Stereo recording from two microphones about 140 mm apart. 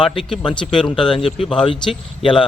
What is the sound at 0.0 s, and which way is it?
Speech, centre (ahead or behind).